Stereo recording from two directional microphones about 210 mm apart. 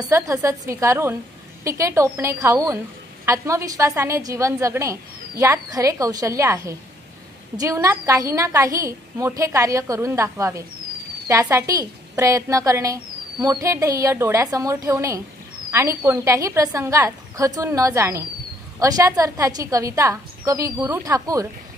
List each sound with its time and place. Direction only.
0.0 s a woman's voice: 15° right (ahead or behind)